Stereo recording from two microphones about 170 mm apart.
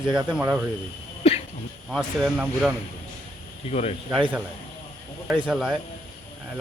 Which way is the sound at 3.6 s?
40° left (ahead or behind).